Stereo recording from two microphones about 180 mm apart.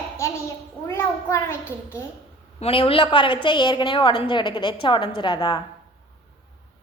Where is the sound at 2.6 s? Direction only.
30° left (ahead or behind).